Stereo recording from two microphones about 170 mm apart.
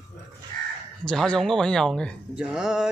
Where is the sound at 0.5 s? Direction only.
25° left (ahead or behind).